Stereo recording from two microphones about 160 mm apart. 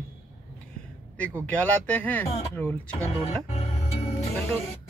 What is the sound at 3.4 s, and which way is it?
Music, 40° left (ahead or behind).